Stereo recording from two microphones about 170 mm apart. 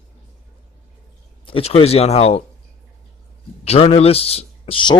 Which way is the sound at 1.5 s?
35° left (ahead or behind).